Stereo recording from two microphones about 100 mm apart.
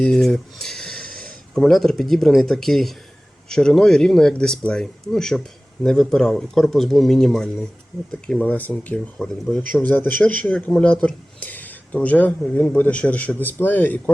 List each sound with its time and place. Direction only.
0.0 s a man's voice: 5° left (ahead or behind)